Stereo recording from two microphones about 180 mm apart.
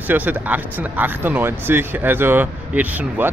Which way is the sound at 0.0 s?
10° right (ahead or behind).